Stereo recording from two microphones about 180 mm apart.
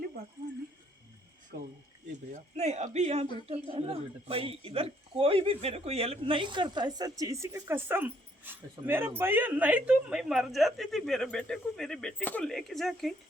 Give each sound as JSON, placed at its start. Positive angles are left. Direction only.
{"t": 2.6, "sound": "speech", "side_deg": -40}